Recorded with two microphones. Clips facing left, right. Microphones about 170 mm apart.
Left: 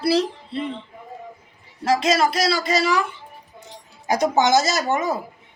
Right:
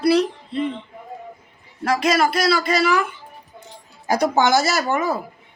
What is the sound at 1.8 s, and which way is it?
Speech, 25° left (ahead or behind).